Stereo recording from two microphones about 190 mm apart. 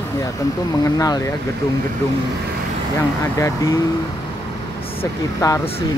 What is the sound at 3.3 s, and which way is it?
Speech, 15° left (ahead or behind).